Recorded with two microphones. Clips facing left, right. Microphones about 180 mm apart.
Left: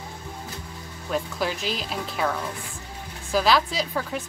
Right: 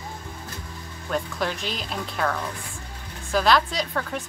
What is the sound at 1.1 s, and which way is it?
A woman's voice, 5° left (ahead or behind).